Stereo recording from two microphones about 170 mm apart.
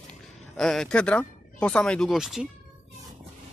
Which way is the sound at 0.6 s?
5° left (ahead or behind).